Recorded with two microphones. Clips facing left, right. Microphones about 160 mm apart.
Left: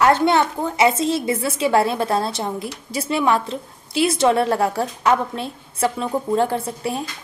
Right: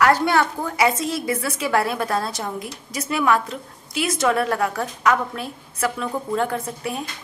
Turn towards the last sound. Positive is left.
turn(degrees=30)  # may be behind; listen again after turning